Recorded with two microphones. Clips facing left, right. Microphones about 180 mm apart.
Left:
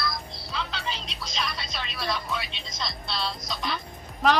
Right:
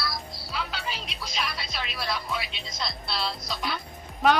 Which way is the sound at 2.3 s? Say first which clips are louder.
Even; 5° right (ahead or behind).